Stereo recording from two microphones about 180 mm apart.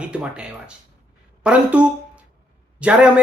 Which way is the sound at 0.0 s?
5° right (ahead or behind).